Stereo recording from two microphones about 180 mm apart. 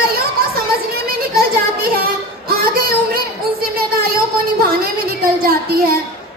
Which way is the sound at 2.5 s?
55° right (ahead or behind).